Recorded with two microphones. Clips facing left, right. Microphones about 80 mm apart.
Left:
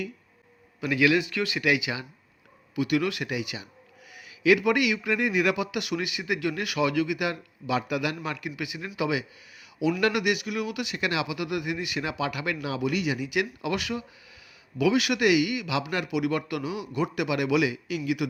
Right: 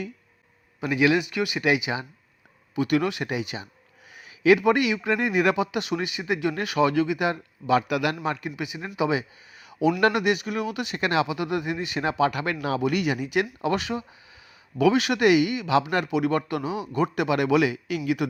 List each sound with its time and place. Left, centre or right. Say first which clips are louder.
0.8 s a man's voice: right 1 dB; right
2.7 s speech: right 2 dB; right
3.0 s speech: right 2 dB; right
7.7 s a man's voice: right 5 dB; right
8.2 s a man's voice: right 4 dB; right